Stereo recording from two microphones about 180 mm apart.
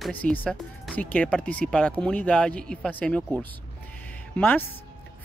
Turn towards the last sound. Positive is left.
turn(degrees=10)  # may be behind; listen again after turning